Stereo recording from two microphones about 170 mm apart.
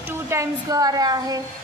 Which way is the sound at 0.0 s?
15° right (ahead or behind).